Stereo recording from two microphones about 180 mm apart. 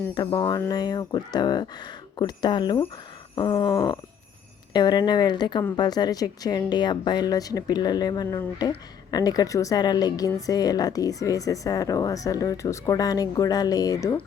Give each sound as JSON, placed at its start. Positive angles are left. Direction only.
{"t": 0.1, "sound": "a woman's voice", "side_deg": 25}